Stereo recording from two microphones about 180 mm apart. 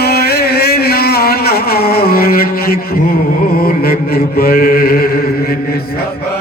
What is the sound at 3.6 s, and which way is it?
Chant, 60° left (ahead or behind).